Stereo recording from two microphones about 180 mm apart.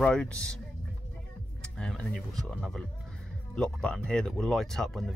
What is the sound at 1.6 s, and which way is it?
Speech, 5° left (ahead or behind).